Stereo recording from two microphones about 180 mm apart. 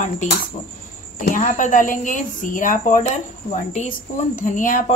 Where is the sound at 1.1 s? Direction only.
45° left (ahead or behind).